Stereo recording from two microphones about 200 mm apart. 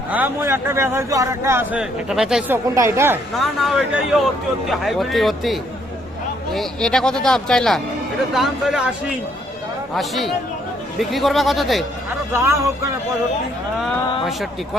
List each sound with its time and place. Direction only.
0.1 s speech: 10° right (ahead or behind)
2.7 s speech: 15° right (ahead or behind)
3.3 s speech: centre (ahead or behind)
12.3 s speech: 15° right (ahead or behind)